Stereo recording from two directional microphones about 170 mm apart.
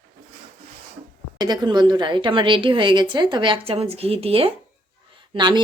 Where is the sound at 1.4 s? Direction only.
25° right (ahead or behind).